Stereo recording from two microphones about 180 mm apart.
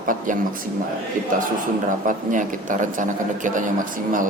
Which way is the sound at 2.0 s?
45° right (ahead or behind).